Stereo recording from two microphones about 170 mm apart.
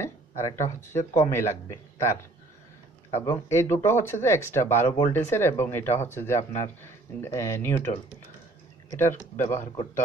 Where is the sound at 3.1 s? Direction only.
40° left (ahead or behind).